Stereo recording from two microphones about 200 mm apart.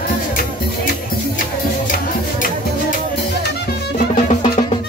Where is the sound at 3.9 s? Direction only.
45° left (ahead or behind).